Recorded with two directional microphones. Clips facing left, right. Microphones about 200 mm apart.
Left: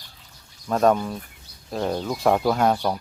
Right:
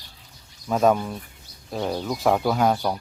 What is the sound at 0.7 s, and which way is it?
Speech, 5° right (ahead or behind).